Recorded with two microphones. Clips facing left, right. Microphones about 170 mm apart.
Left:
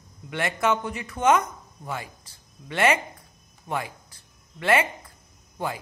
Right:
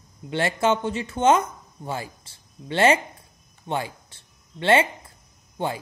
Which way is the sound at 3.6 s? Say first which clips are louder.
Right 2 dB; 30° right (ahead or behind).